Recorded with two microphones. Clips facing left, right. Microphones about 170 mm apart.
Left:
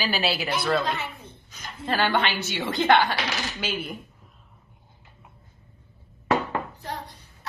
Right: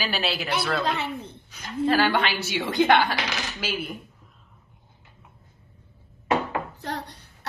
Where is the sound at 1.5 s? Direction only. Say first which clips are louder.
Right 6 dB; 10° right (ahead or behind).